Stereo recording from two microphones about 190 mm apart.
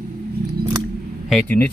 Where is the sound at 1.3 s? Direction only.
10° left (ahead or behind).